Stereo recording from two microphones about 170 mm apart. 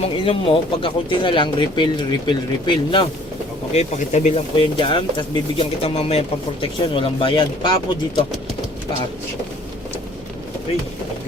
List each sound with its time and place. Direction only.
0.0 s speech: 30° left (ahead or behind)
3.7 s speech: 40° left (ahead or behind)
4.6 s speech: 30° left (ahead or behind)